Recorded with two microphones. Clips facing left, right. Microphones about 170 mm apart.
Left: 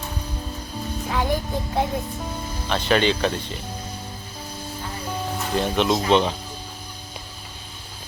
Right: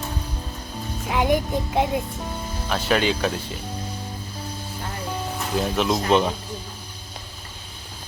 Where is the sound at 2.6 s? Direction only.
5° right (ahead or behind).